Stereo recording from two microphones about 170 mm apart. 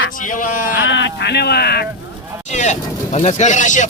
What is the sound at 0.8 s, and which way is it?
Speech, 90° left.